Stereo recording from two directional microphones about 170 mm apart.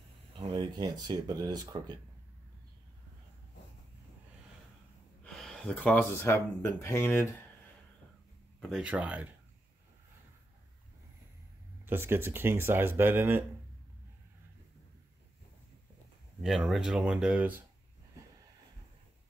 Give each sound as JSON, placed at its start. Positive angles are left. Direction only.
{"t": 0.4, "sound": "speech", "side_deg": -25}
{"t": 5.2, "sound": "speech", "side_deg": 0}
{"t": 8.5, "sound": "speech", "side_deg": 0}
{"t": 11.8, "sound": "speech", "side_deg": -15}
{"t": 16.4, "sound": "speech", "side_deg": 0}